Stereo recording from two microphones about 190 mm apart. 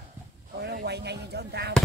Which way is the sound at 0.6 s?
60° right (ahead or behind).